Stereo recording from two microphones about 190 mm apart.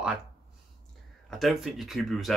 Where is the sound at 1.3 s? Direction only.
Centre (ahead or behind).